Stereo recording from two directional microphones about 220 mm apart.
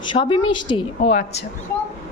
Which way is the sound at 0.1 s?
20° left (ahead or behind).